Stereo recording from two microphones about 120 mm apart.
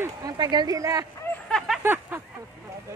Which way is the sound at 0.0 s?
30° right (ahead or behind).